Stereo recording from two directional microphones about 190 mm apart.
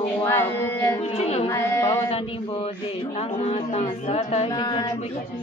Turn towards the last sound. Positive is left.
turn(degrees=35)  # may be behind; listen again after turning